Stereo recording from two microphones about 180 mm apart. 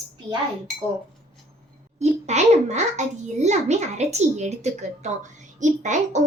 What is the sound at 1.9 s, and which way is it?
A child's voice, 40° right (ahead or behind).